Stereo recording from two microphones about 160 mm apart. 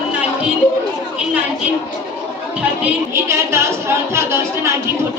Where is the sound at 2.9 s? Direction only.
15° right (ahead or behind).